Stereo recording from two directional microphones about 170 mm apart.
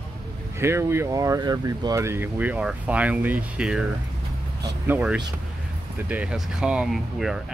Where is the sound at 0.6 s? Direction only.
15° right (ahead or behind).